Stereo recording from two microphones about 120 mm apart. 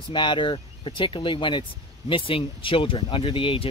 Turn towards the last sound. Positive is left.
turn(degrees=45)  # may be behind; listen again after turning